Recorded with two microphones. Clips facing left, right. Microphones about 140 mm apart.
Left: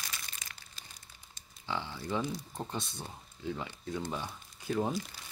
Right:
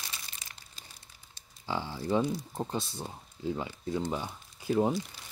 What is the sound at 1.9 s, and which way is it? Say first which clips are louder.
Speech: right 8 dB; 20° right (ahead or behind).